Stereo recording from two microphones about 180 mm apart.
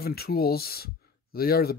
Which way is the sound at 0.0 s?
60° left (ahead or behind).